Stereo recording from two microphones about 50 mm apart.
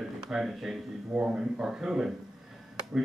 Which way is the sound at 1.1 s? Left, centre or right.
Centre.